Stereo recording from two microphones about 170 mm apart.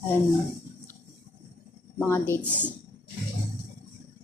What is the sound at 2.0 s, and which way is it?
Speech, 15° left (ahead or behind).